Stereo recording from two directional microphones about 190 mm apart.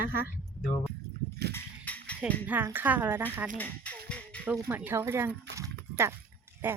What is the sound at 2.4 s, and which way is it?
Speech, 10° right (ahead or behind).